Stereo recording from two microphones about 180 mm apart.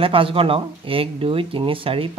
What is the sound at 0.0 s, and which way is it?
Speech, 30° right (ahead or behind).